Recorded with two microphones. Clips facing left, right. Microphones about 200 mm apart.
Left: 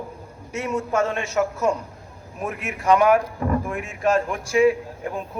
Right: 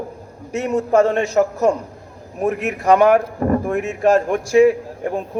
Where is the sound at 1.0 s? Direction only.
40° right (ahead or behind).